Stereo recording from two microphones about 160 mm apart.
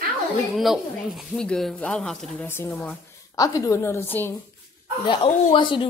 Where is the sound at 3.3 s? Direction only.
20° left (ahead or behind).